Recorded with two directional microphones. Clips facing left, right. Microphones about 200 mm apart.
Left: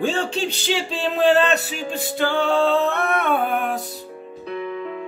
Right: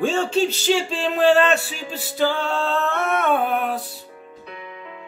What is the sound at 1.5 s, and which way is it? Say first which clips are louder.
Music: even; 40° left (ahead or behind).